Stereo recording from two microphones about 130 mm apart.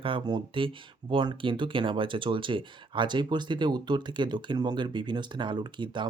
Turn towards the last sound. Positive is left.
turn(degrees=-35)  # may be behind; listen again after turning